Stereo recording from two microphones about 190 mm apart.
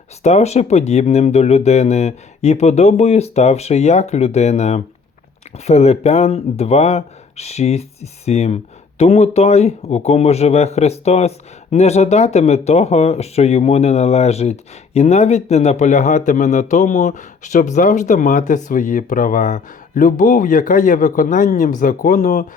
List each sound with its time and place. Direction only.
0.2 s speech: 35° left (ahead or behind)